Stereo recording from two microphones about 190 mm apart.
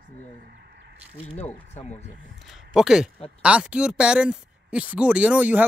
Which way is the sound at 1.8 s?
35° left (ahead or behind).